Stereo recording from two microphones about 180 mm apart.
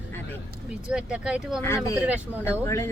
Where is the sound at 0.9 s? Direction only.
5° right (ahead or behind).